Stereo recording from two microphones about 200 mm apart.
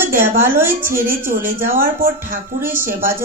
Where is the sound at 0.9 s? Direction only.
45° right (ahead or behind).